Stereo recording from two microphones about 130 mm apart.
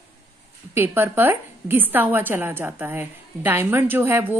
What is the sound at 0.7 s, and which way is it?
A woman's voice, 20° right (ahead or behind).